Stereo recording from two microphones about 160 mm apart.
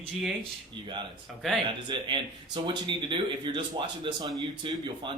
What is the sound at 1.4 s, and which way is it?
Speech, centre (ahead or behind).